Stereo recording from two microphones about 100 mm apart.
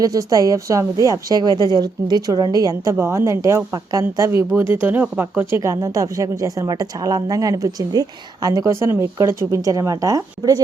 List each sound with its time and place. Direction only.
0.0 s a woman's voice: 35° right (ahead or behind)
3.0 s a woman's voice: 25° right (ahead or behind)